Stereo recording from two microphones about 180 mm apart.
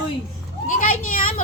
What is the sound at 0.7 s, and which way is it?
Speech, 50° left (ahead or behind).